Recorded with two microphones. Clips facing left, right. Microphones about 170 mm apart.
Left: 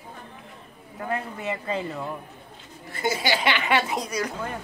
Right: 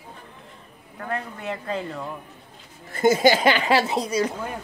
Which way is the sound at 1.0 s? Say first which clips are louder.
Left 1 dB; centre (ahead or behind).